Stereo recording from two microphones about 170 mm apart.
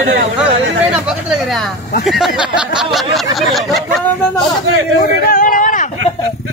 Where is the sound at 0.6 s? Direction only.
90° right.